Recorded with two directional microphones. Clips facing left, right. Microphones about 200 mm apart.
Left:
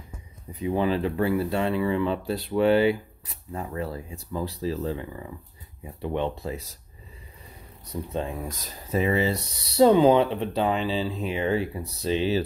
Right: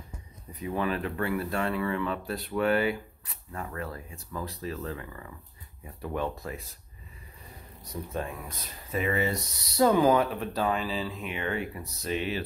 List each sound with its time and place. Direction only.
0.6 s speech: 25° left (ahead or behind)
8.1 s speech: 25° left (ahead or behind)